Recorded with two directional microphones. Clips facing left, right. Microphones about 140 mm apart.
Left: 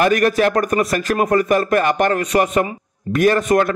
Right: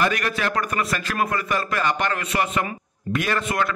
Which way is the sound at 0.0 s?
45° left (ahead or behind).